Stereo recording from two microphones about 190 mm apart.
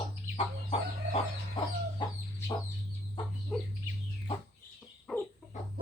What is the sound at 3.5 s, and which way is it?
Chicken, centre (ahead or behind).